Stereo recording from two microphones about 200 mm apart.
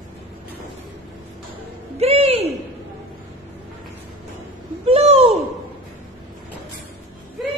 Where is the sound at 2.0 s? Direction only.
30° right (ahead or behind).